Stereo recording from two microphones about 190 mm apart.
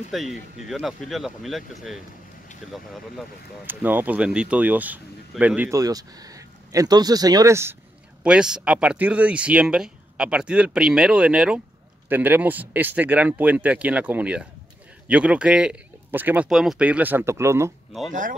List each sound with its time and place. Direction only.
0.1 s speech: centre (ahead or behind)
8.2 s speech: 5° right (ahead or behind)